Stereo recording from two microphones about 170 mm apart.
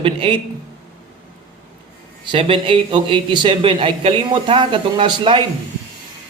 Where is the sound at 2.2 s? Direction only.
30° right (ahead or behind).